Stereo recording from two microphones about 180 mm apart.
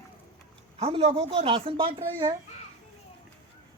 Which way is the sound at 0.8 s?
35° right (ahead or behind).